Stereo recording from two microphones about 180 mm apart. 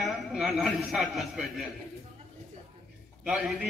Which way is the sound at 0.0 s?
Centre (ahead or behind).